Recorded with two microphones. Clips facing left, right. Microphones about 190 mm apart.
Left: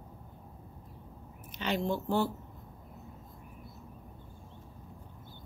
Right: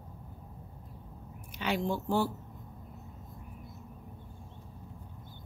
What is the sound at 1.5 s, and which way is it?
Speech, 10° right (ahead or behind).